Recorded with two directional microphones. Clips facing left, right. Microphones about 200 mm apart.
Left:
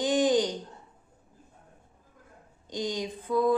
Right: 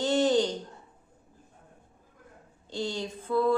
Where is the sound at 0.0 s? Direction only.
15° left (ahead or behind).